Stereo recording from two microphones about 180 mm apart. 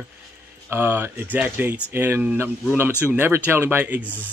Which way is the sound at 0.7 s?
10° right (ahead or behind).